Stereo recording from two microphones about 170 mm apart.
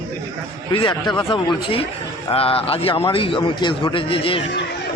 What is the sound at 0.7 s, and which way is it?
A man's voice, 30° left (ahead or behind).